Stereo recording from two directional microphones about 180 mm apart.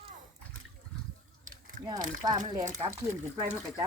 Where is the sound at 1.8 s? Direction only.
45° right (ahead or behind).